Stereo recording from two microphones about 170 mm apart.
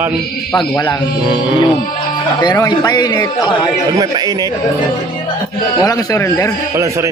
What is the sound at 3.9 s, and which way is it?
Speech, 20° right (ahead or behind).